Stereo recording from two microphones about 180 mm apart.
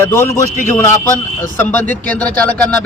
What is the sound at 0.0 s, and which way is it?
Speech, 15° left (ahead or behind).